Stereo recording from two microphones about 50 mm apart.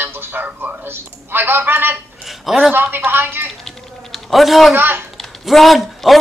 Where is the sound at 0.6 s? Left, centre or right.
Right.